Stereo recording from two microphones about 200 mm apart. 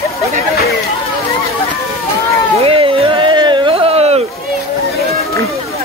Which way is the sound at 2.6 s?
25° right (ahead or behind).